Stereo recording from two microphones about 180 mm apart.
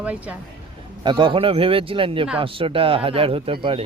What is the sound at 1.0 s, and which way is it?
Speech, 25° right (ahead or behind).